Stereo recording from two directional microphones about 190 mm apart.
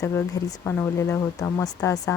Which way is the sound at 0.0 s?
15° left (ahead or behind).